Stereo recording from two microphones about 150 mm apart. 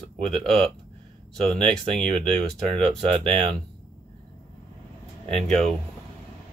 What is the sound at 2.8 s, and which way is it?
Speech, 40° right (ahead or behind).